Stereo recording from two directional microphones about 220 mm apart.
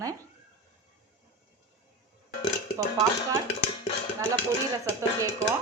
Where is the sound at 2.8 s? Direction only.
15° right (ahead or behind).